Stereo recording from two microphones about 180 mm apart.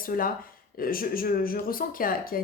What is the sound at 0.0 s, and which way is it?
Speech, 50° left (ahead or behind).